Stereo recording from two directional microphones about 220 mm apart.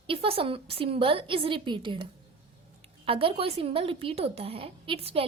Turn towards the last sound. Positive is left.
turn(degrees=-25)  # may be behind; listen again after turning